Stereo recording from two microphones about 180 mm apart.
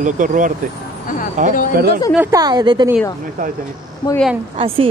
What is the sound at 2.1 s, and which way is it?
Speech, 20° right (ahead or behind).